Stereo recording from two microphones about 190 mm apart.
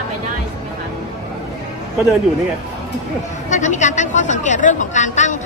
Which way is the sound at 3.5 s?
40° left (ahead or behind).